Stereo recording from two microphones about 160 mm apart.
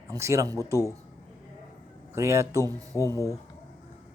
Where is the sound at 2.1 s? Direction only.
15° right (ahead or behind).